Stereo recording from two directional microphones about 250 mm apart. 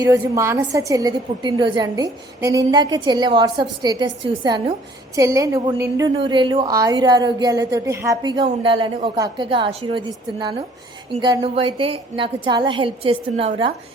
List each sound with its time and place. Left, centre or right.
0.0 s a woman's voice: centre
11.2 s a woman's voice: centre